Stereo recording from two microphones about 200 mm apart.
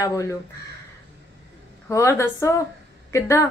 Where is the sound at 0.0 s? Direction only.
15° left (ahead or behind).